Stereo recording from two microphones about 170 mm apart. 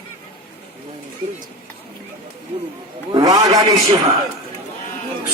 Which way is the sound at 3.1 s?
20° right (ahead or behind).